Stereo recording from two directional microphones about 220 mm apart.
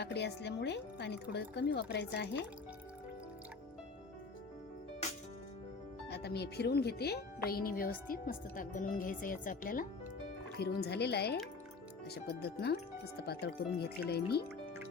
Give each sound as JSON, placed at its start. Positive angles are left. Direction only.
{"t": 0.0, "sound": "speech", "side_deg": 50}
{"t": 6.1, "sound": "speech", "side_deg": 50}